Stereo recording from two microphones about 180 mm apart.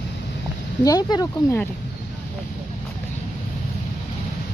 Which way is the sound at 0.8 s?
20° left (ahead or behind).